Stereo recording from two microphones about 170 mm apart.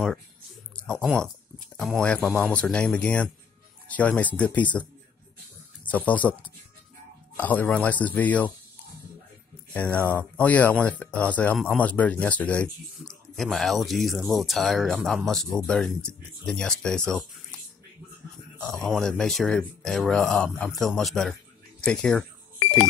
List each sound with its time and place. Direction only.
0.7 s speech: 5° left (ahead or behind)
5.9 s speech: 10° left (ahead or behind)
7.3 s speech: 10° left (ahead or behind)
9.8 s speech: 10° left (ahead or behind)
18.9 s speech: 5° left (ahead or behind)